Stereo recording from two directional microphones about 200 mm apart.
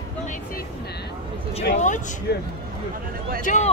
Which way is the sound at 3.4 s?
40° left (ahead or behind).